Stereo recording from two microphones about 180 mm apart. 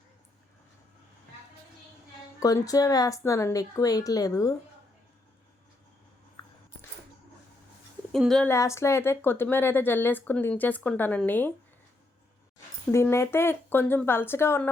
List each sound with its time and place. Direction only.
2.4 s speech: 20° left (ahead or behind)
6.4 s biting: 25° left (ahead or behind)
8.1 s speech: centre (ahead or behind)
8.4 s a woman's voice: 15° left (ahead or behind)
12.9 s a woman's voice: 15° left (ahead or behind)